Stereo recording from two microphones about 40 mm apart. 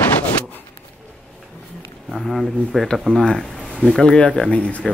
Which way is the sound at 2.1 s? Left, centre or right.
Centre.